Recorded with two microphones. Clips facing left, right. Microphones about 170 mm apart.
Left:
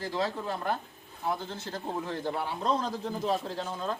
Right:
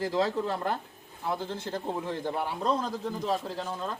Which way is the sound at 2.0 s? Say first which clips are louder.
Right 1 dB; 15° right (ahead or behind).